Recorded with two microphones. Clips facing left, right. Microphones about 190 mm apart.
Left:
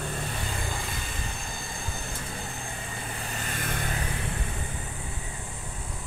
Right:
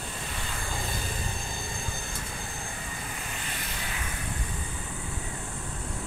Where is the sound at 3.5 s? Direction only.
50° left (ahead or behind).